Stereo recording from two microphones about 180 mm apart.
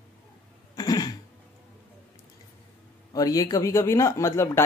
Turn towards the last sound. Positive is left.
turn(degrees=15)  # may be behind; listen again after turning